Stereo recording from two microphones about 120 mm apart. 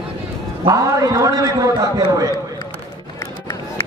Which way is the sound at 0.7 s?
30° right (ahead or behind).